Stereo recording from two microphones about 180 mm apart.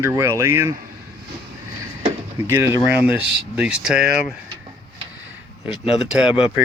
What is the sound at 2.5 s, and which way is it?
Speech, 15° right (ahead or behind).